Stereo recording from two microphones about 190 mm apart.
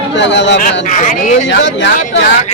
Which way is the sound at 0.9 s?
40° left (ahead or behind).